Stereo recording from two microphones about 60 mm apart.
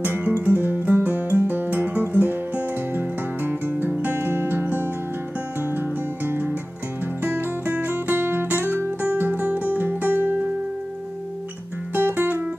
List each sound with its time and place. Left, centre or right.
0.0 s music: right
11.9 s music: right